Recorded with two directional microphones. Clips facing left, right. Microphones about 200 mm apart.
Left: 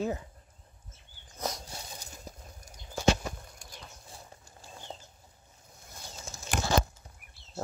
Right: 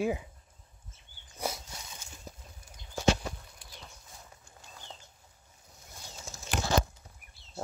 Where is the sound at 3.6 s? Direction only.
45° left (ahead or behind).